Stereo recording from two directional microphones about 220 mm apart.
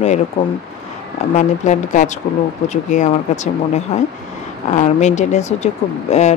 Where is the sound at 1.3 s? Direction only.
35° left (ahead or behind).